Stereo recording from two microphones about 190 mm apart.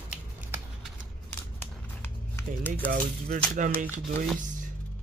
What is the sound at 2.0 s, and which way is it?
Music, 10° left (ahead or behind).